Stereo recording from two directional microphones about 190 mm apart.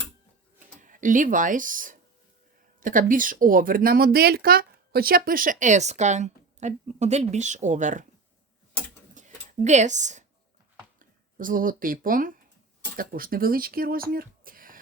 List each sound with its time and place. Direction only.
0.8 s speech: 45° right (ahead or behind)
9.1 s a sound: 40° right (ahead or behind)
11.0 s speech: 45° right (ahead or behind)